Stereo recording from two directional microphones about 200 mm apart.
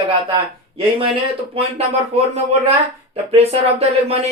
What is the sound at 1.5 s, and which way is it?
Speech, 30° right (ahead or behind).